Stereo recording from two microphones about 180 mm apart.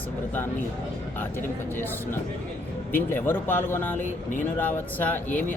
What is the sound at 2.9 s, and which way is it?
A man's voice, 10° left (ahead or behind).